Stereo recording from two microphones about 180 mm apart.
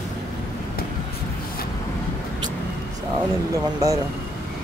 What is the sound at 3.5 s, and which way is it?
Speech, 20° right (ahead or behind).